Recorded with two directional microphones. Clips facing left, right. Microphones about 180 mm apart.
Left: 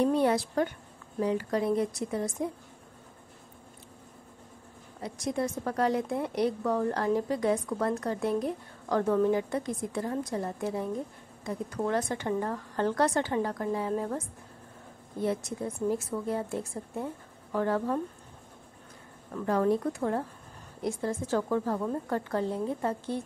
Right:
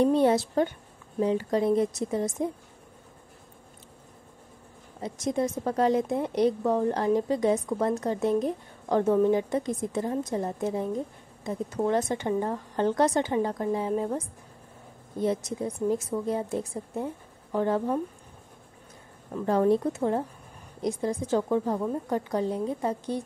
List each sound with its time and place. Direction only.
0.0 s a woman's voice: 25° right (ahead or behind)
5.0 s a woman's voice: 20° right (ahead or behind)
15.2 s a woman's voice: 20° right (ahead or behind)
19.3 s a woman's voice: 25° right (ahead or behind)